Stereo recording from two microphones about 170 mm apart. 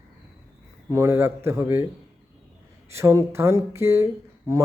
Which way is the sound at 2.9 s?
15° right (ahead or behind).